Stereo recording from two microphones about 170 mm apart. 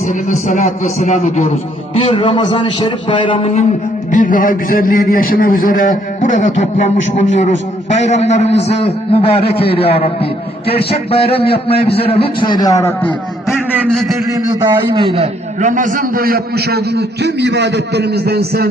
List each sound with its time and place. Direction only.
0.1 s a man's voice: 50° left (ahead or behind)
2.0 s a man's voice: 30° left (ahead or behind)
4.1 s a man's voice: 50° left (ahead or behind); by 13.1 s 15° left (ahead or behind)
13.5 s a sound: centre (ahead or behind)
14.3 s a man's voice: 25° right (ahead or behind); by 18.7 s 70° right (ahead or behind)